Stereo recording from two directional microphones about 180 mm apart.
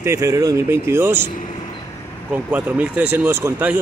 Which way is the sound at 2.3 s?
10° right (ahead or behind).